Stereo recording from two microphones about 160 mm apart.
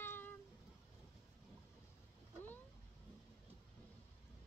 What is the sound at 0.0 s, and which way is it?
Cat, 15° left (ahead or behind).